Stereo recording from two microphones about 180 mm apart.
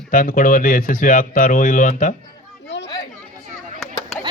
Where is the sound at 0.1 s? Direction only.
50° left (ahead or behind).